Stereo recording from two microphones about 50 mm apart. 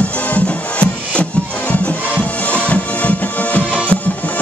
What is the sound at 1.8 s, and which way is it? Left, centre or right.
Music, left.